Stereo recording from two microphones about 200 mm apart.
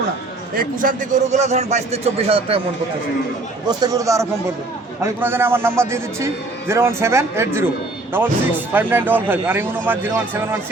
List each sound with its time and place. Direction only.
0.5 s a man's voice: 40° right (ahead or behind)
3.7 s a man's voice: 15° right (ahead or behind)